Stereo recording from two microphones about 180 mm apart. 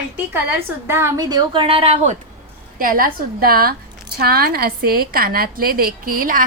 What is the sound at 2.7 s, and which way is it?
A woman's voice, 50° right (ahead or behind).